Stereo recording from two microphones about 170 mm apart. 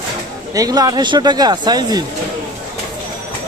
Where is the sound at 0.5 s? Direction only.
20° right (ahead or behind).